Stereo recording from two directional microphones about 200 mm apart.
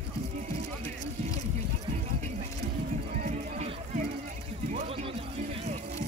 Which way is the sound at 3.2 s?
35° right (ahead or behind).